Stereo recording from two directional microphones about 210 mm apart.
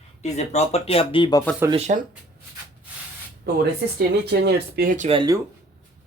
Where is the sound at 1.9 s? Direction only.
40° right (ahead or behind).